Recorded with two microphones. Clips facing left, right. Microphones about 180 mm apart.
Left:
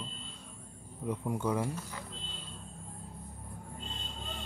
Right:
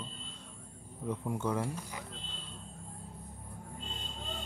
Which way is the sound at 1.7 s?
15° right (ahead or behind).